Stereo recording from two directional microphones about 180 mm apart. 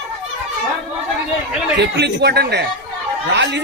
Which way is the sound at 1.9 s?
70° right (ahead or behind).